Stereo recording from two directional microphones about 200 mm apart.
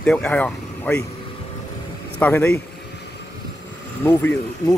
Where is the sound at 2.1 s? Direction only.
10° left (ahead or behind).